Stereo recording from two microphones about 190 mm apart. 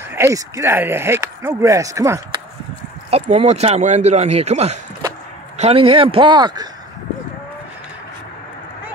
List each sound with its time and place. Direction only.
0.1 s speech: 15° right (ahead or behind)
3.1 s speech: 35° right (ahead or behind)